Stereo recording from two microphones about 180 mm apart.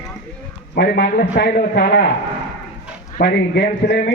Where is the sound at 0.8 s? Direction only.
65° left (ahead or behind).